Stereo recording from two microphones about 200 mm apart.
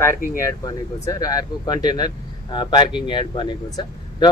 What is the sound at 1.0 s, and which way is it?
Speech, 15° left (ahead or behind).